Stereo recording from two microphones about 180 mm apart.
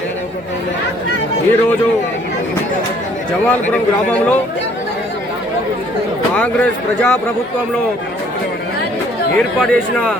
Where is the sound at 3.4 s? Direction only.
10° left (ahead or behind).